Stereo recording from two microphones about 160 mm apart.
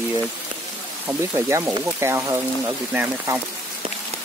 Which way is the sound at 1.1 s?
15° right (ahead or behind).